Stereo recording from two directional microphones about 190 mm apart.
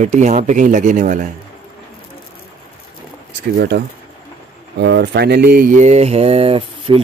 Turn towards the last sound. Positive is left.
turn(degrees=-30)  # may be behind; listen again after turning